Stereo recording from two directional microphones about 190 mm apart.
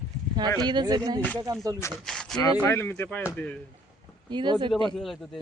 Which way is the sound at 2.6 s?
15° left (ahead or behind).